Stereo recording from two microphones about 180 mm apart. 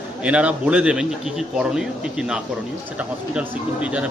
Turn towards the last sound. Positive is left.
turn(degrees=-5)  # may be behind; listen again after turning